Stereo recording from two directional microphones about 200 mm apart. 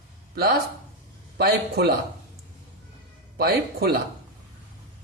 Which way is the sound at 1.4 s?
50° right (ahead or behind).